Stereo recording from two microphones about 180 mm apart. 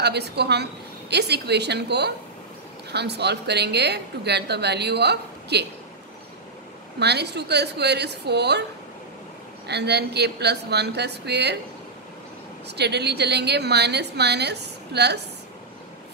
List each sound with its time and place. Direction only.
0.0 s a woman's voice: 65° right (ahead or behind)
7.0 s a woman's voice: 70° right (ahead or behind)
9.7 s a woman's voice: 70° right (ahead or behind)
12.6 s a woman's voice: 70° right (ahead or behind)